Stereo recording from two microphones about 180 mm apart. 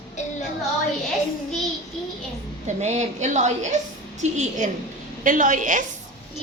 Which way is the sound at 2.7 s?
40° right (ahead or behind).